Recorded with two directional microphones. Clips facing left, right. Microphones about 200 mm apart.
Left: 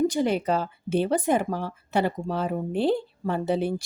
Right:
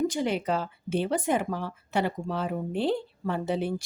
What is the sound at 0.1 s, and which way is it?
Speech, 40° left (ahead or behind).